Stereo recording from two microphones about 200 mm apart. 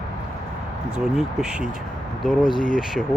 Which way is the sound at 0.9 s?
5° right (ahead or behind).